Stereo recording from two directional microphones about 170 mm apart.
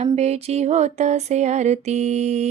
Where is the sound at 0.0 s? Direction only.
40° right (ahead or behind).